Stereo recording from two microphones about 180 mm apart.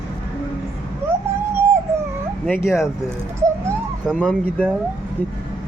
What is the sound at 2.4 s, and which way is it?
Speech, 10° left (ahead or behind).